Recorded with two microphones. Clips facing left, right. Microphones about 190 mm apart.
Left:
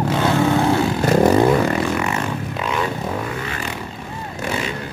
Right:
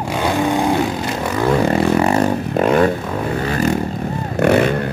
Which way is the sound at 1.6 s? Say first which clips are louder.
Right 5 dB; 35° right (ahead or behind).